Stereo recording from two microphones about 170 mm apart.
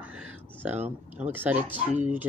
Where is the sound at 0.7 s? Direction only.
40° right (ahead or behind).